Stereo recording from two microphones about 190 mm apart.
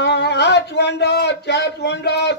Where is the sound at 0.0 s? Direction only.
60° left (ahead or behind).